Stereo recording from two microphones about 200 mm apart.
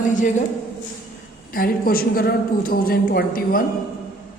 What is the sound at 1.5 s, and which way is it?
A woman's voice, 45° left (ahead or behind).